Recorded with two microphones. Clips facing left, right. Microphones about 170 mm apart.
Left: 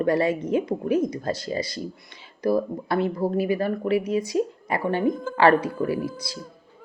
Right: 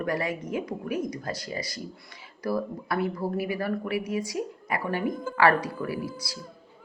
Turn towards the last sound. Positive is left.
turn(degrees=20)  # may be behind; listen again after turning